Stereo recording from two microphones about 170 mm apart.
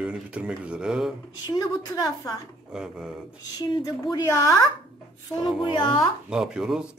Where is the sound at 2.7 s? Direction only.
5° right (ahead or behind).